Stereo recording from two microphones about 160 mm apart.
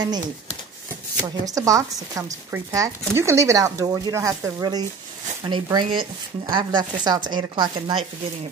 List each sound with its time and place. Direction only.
1.5 s speech: 20° right (ahead or behind)